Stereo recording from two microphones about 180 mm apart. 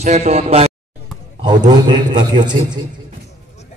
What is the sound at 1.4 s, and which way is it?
A man's voice, 25° right (ahead or behind).